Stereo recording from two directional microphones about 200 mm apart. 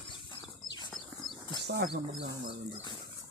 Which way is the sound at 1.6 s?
55° right (ahead or behind).